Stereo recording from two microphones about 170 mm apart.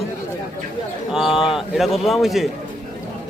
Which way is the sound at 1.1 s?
Centre (ahead or behind).